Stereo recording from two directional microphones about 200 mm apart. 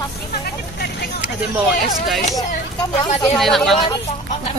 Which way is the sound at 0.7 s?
55° left (ahead or behind).